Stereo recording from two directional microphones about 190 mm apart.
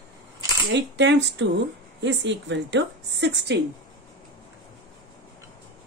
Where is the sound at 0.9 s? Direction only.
65° right (ahead or behind).